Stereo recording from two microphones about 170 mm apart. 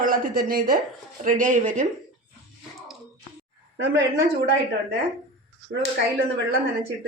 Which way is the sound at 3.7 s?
90° right.